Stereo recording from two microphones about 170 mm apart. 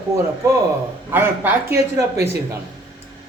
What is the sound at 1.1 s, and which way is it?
Speech, 15° right (ahead or behind).